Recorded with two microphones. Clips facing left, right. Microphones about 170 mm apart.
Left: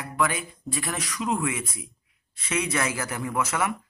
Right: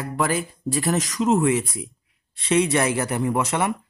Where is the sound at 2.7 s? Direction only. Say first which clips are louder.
Right 7 dB; 30° right (ahead or behind).